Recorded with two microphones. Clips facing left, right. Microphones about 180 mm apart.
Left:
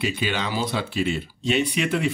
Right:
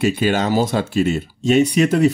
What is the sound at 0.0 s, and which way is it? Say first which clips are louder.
Speech: right 8 dB; 45° right (ahead or behind).